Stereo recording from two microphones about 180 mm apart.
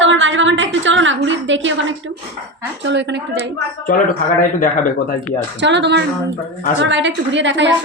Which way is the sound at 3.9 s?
50° left (ahead or behind).